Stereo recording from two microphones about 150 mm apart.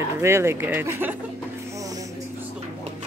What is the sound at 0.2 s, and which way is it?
Speech, 15° right (ahead or behind).